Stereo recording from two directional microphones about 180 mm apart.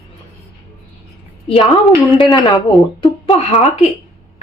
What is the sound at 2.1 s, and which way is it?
A woman's voice, 25° left (ahead or behind).